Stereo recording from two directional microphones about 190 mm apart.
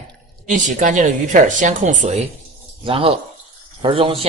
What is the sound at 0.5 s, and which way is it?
A man's voice, 40° right (ahead or behind).